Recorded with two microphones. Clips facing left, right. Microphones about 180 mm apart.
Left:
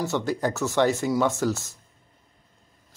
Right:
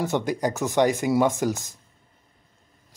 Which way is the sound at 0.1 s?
15° right (ahead or behind).